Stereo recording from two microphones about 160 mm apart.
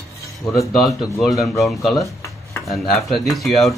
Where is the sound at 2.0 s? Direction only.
20° left (ahead or behind).